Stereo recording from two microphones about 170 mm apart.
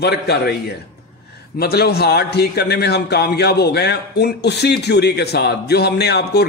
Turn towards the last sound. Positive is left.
turn(degrees=75)  # may be behind; listen again after turning